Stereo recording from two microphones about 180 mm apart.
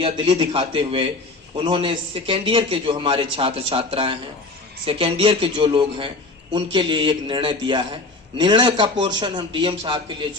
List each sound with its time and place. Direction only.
0.0 s a man's voice: 30° right (ahead or behind)